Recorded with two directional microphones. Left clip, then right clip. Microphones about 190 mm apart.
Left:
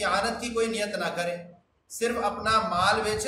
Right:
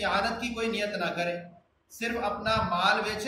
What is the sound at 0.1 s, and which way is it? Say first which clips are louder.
A man's voice: left 2 dB; 20° left (ahead or behind).